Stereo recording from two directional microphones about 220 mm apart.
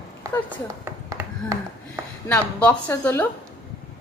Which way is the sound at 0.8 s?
10° right (ahead or behind).